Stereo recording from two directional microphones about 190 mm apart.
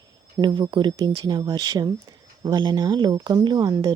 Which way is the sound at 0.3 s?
25° right (ahead or behind).